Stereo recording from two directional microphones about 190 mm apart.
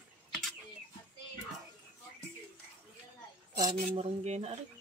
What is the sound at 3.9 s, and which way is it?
Cutlery, 35° right (ahead or behind).